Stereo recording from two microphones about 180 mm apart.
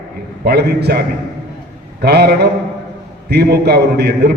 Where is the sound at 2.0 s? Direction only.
60° right (ahead or behind).